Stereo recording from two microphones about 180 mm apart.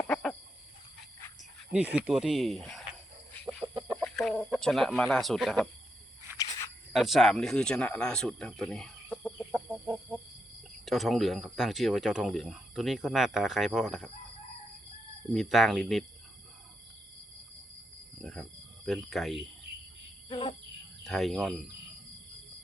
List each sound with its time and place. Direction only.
0.1 s a sound: centre (ahead or behind)
1.7 s speech: 5° right (ahead or behind)
3.3 s chicken: centre (ahead or behind)
3.9 s speech: 5° left (ahead or behind)
6.3 s wild animals: 20° left (ahead or behind)
6.9 s speech: centre (ahead or behind)
9.8 s chicken: 10° right (ahead or behind)
10.8 s speech: centre (ahead or behind)
15.3 s speech: centre (ahead or behind)
18.2 s cricket: centre (ahead or behind)
18.9 s speech: centre (ahead or behind)
21.0 s speech: centre (ahead or behind)